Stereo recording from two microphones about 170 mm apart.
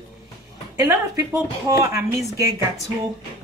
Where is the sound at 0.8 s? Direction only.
20° right (ahead or behind).